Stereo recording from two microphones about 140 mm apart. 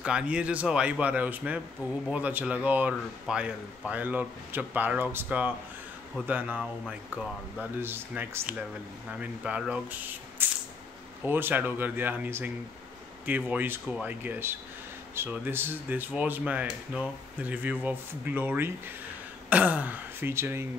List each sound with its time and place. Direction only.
0.0 s speech: 5° right (ahead or behind)